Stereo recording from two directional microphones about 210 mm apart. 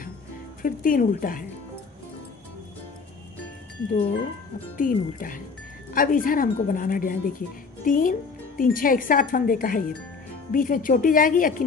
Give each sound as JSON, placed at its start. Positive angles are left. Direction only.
{"t": 0.6, "sound": "speech", "side_deg": 40}
{"t": 4.7, "sound": "speech", "side_deg": 40}